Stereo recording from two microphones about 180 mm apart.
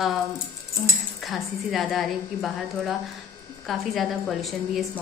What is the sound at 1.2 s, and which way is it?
A woman's voice, centre (ahead or behind).